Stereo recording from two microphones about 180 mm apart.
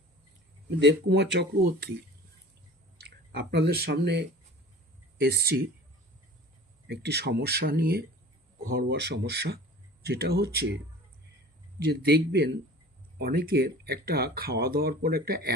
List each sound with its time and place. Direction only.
0.8 s speech: 75° right (ahead or behind)
3.0 s speech: 70° right (ahead or behind)
5.2 s speech: 60° right (ahead or behind)
6.8 s speech: 70° right (ahead or behind)
11.9 s speech: 65° right (ahead or behind)